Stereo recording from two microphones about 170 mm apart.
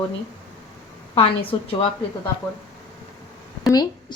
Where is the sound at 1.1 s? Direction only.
30° left (ahead or behind).